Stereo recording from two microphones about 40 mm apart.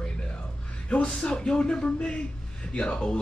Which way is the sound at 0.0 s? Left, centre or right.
Left.